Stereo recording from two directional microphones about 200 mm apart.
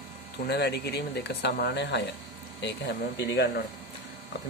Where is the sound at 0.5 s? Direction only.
55° left (ahead or behind).